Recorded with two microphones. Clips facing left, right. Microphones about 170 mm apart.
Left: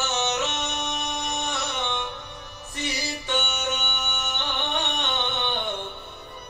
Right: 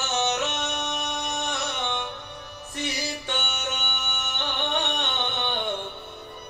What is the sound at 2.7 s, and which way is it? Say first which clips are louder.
Music: even; 55° right (ahead or behind).